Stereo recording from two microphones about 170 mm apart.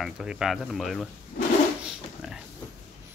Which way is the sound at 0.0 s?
Centre (ahead or behind).